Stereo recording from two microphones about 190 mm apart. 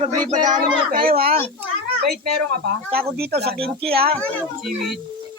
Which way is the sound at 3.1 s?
55° right (ahead or behind).